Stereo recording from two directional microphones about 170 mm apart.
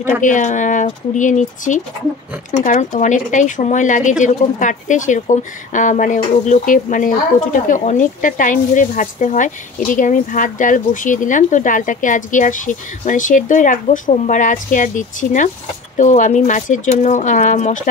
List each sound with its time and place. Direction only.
0.2 s speech: 45° left (ahead or behind)